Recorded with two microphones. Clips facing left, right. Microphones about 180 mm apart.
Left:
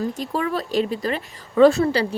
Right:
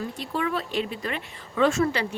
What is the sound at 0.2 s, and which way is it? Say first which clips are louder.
A woman's voice: left 4 dB; 40° left (ahead or behind).